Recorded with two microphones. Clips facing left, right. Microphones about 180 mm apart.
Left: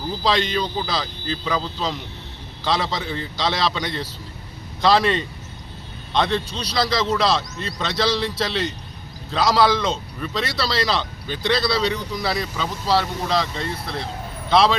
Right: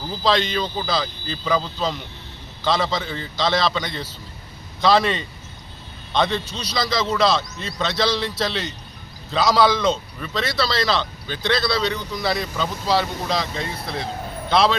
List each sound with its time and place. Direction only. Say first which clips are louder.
0.3 s speech: right 1 dB; centre (ahead or behind)
6.5 s speech: left 1 dB; 30° left (ahead or behind)
6.7 s speech: even; 5° left (ahead or behind)